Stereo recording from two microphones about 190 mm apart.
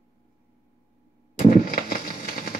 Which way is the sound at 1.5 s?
50° left (ahead or behind).